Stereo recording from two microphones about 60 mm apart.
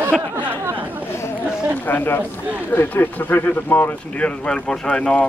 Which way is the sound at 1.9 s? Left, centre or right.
Left.